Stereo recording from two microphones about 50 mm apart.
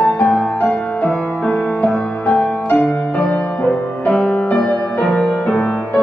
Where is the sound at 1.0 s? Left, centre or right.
Centre.